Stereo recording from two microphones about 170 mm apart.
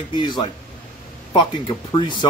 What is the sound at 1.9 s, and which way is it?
Speech, 25° left (ahead or behind).